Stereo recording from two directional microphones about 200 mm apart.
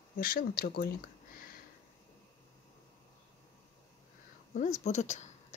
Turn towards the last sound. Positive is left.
turn(degrees=35)  # may be behind; listen again after turning